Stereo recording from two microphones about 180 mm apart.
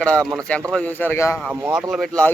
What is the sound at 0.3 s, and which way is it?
Speech, 5° left (ahead or behind).